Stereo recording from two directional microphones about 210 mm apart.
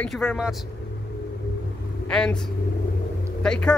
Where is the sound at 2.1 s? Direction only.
5° left (ahead or behind).